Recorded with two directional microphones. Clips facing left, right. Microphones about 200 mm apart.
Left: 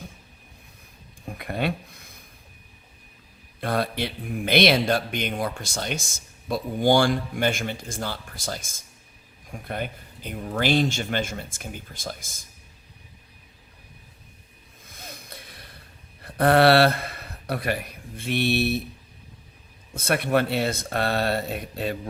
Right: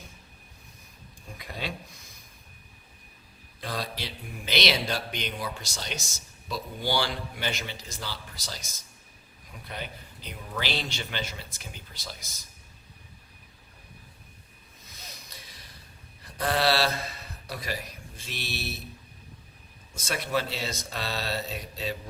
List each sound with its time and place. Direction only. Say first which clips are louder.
1.4 s speech: left 9 dB; 60° left (ahead or behind)
3.6 s speech: left 9 dB; 55° left (ahead or behind)
14.8 s a sound: left 7 dB; 50° left (ahead or behind)
16.2 s speech: left 9 dB; 60° left (ahead or behind)
19.9 s speech: left 7 dB; 60° left (ahead or behind)